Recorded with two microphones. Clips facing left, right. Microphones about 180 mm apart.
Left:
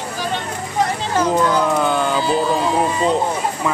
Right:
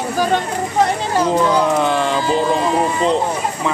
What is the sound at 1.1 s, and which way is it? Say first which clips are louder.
Speech: even; 10° right (ahead or behind).